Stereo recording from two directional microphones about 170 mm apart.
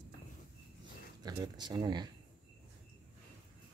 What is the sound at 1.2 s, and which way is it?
Speech, 20° right (ahead or behind).